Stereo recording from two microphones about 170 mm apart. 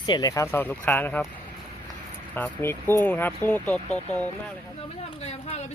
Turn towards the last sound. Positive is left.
turn(degrees=40)  # may be behind; listen again after turning